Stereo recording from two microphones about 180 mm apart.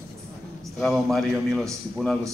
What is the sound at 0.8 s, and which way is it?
A man's voice, centre (ahead or behind).